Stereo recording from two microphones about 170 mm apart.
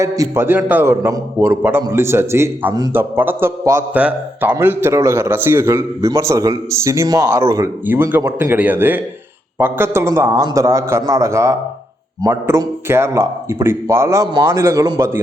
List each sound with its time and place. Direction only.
0.0 s a man's voice: 15° right (ahead or behind)